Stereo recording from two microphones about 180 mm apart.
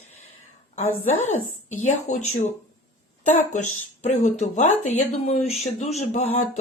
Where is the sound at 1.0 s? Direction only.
40° left (ahead or behind).